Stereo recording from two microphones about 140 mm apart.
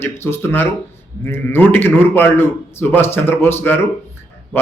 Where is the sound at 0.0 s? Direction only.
15° left (ahead or behind).